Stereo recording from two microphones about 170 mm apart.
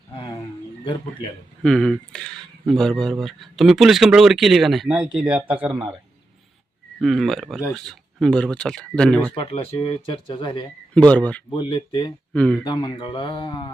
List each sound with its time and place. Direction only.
0.1 s roaring cats: 30° left (ahead or behind)
1.6 s speech: 5° left (ahead or behind)
7.0 s speech: centre (ahead or behind)
9.3 s speech: 35° left (ahead or behind)
10.9 s speech: 5° left (ahead or behind)
11.5 s speech: 25° left (ahead or behind)
12.3 s speech: 5° left (ahead or behind)
12.6 s speech: 25° left (ahead or behind)